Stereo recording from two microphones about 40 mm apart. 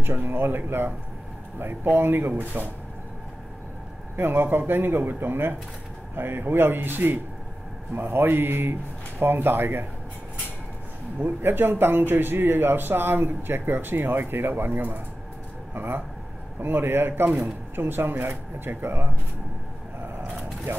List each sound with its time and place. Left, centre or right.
0.0 s speech: right
4.2 s speech: right
7.9 s speech: right
11.1 s speech: right